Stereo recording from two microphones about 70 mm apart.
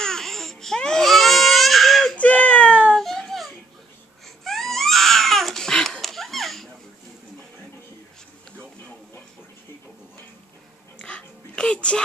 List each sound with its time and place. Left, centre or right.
0.0 s baby cry: centre
2.1 s baby cry: centre
3.0 s baby cry: centre
11.0 s a sound: centre